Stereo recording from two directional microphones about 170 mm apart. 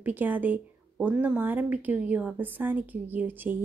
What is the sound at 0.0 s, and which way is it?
Speech, 10° right (ahead or behind).